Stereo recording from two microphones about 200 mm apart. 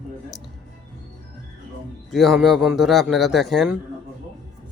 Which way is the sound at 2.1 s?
Centre (ahead or behind).